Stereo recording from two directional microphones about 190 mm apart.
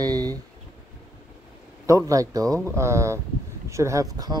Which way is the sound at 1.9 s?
15° right (ahead or behind).